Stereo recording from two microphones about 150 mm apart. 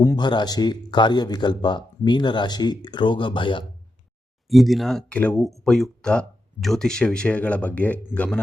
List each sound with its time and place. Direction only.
0.0 s a man's voice: 25° left (ahead or behind)
4.4 s speech: centre (ahead or behind)